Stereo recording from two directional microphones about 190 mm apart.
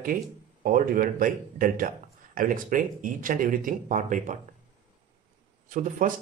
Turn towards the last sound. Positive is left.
turn(degrees=-45)  # may be behind; listen again after turning